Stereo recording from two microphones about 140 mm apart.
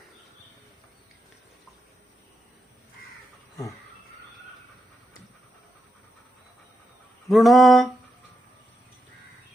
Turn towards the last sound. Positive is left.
turn(degrees=0)  # may be behind; listen again after turning